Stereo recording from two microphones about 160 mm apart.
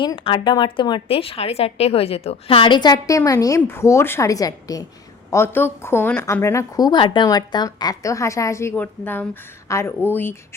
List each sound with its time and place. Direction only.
0.0 s a woman's voice: 30° left (ahead or behind); by 10.3 s 10° left (ahead or behind)